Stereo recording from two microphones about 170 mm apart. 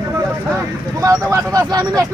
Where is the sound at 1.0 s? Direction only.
20° right (ahead or behind).